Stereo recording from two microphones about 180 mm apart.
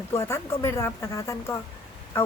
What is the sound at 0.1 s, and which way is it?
Speech, 15° left (ahead or behind).